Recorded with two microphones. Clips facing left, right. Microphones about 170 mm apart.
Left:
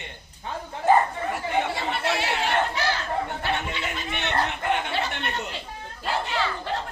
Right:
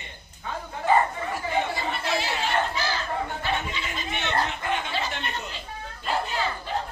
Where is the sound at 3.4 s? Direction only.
60° left (ahead or behind).